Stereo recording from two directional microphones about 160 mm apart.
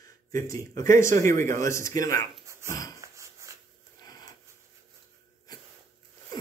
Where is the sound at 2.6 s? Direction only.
20° left (ahead or behind).